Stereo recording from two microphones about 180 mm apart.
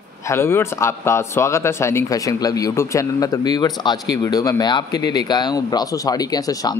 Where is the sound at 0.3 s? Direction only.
15° left (ahead or behind).